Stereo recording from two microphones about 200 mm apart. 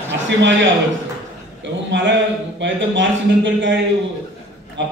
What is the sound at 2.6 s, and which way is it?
A man's voice, 65° right (ahead or behind).